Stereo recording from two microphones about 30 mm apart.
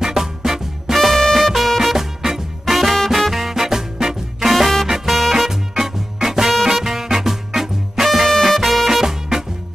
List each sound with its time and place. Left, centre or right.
0.0 s music: centre
0.9 s music: centre
1.8 s music: centre
3.1 s swing music: centre
5.0 s music: centre
5.5 s music: centre
8.3 s music: centre
8.5 s music: centre